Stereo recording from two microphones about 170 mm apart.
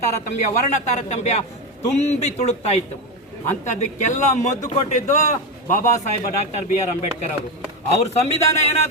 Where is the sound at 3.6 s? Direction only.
45° left (ahead or behind).